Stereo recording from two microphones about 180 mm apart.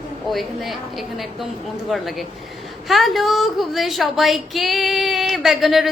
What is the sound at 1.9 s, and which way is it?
A woman's voice, centre (ahead or behind).